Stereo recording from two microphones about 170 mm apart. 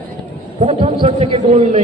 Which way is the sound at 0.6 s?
35° right (ahead or behind).